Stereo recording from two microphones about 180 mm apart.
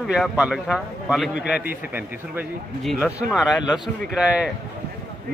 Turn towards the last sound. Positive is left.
turn(degrees=-5)  # may be behind; listen again after turning